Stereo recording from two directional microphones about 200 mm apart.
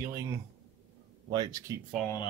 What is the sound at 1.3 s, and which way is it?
Speech, 20° right (ahead or behind).